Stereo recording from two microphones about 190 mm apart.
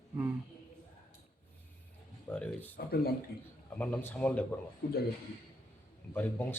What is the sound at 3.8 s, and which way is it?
Speech, 10° left (ahead or behind).